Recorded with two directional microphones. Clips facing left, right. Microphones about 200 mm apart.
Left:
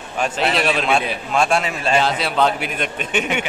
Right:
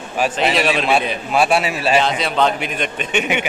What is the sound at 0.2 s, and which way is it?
A man's voice, 5° right (ahead or behind).